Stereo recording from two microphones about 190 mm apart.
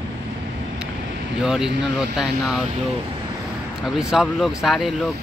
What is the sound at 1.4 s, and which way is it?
Speech, 5° right (ahead or behind).